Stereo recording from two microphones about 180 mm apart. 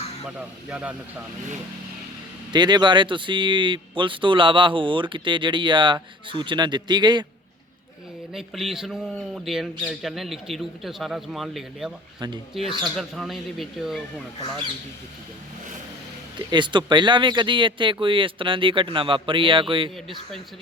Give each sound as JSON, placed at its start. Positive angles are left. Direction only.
{"t": 0.3, "sound": "speech", "side_deg": -5}
{"t": 2.5, "sound": "speech", "side_deg": -25}
{"t": 8.3, "sound": "speech", "side_deg": 0}
{"t": 16.5, "sound": "speech", "side_deg": -25}